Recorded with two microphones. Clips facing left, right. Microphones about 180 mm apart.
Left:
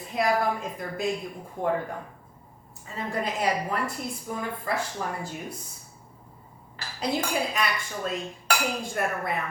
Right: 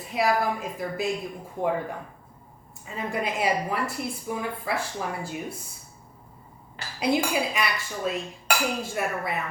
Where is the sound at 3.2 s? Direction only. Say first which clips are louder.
Right 1 dB; 10° right (ahead or behind).